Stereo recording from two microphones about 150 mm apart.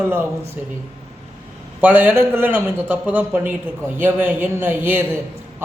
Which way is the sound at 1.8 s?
10° right (ahead or behind).